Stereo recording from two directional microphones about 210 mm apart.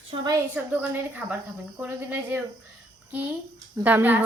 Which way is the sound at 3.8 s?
10° right (ahead or behind).